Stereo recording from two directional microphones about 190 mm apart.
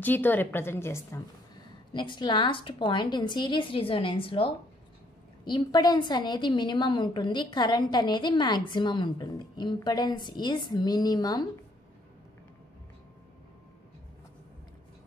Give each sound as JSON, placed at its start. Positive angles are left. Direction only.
{"t": 0.0, "sound": "a woman's voice", "side_deg": 10}
{"t": 2.0, "sound": "a woman's voice", "side_deg": 25}